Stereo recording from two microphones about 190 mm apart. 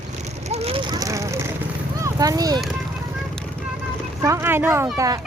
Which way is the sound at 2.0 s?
20° right (ahead or behind).